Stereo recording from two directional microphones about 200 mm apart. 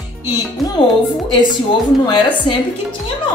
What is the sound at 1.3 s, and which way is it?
Speech, 25° left (ahead or behind).